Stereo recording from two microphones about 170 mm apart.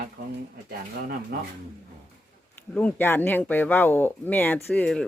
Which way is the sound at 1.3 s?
65° right (ahead or behind).